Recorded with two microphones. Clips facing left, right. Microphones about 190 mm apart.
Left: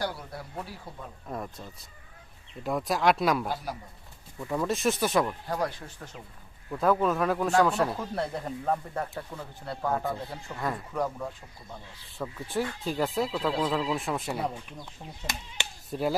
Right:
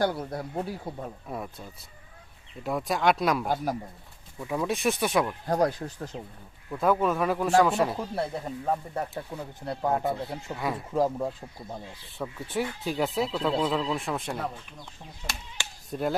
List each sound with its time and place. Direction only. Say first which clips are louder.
0.0 s speech: right 7 dB; 45° right (ahead or behind)
1.3 s speech: even; 5° right (ahead or behind)
3.4 s speech: right 5 dB; 50° right (ahead or behind)
4.4 s speech: even; 5° right (ahead or behind)
5.5 s speech: right 6 dB; 45° right (ahead or behind)
6.7 s speech: even; centre (ahead or behind); by 11.3 s 30° right (ahead or behind)
12.1 s speech: even; centre (ahead or behind)
15.3 s speech: left 1 dB; 20° left (ahead or behind)
15.9 s speech: even; 5° left (ahead or behind)